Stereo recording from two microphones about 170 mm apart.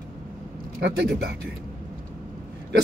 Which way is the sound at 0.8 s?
70° right (ahead or behind).